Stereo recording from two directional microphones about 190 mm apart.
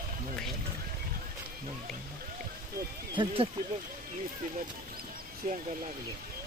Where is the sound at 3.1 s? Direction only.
30° right (ahead or behind).